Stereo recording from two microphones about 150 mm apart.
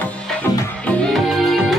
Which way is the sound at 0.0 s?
10° left (ahead or behind).